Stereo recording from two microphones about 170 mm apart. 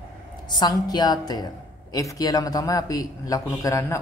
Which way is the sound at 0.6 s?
25° left (ahead or behind).